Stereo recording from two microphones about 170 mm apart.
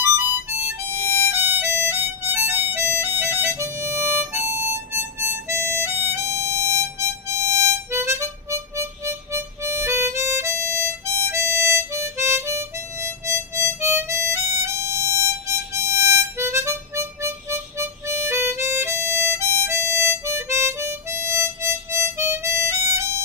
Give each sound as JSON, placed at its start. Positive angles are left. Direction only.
{"t": 0.3, "sound": "harmonica", "side_deg": -10}
{"t": 22.9, "sound": "music", "side_deg": -15}